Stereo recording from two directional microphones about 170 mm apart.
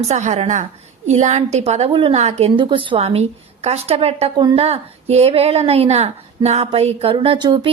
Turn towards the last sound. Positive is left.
turn(degrees=-25)  # may be behind; listen again after turning